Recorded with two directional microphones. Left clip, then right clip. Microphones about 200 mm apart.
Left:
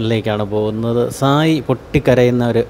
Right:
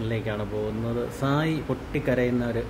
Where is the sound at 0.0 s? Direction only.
40° left (ahead or behind).